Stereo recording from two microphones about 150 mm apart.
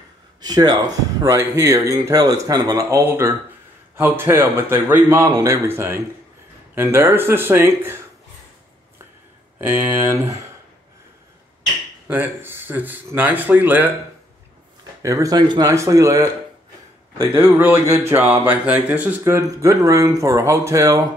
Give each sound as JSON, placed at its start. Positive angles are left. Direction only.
{"t": 0.4, "sound": "speech", "side_deg": -25}
{"t": 9.6, "sound": "speech", "side_deg": -15}
{"t": 12.1, "sound": "speech", "side_deg": -15}
{"t": 15.0, "sound": "speech", "side_deg": -20}
{"t": 17.3, "sound": "speech", "side_deg": -10}